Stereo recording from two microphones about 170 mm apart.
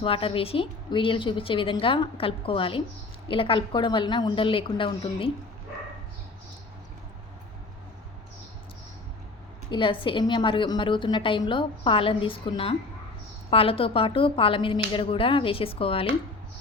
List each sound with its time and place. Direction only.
0.0 s a woman's voice: 30° left (ahead or behind)
9.6 s a woman's voice: 30° left (ahead or behind)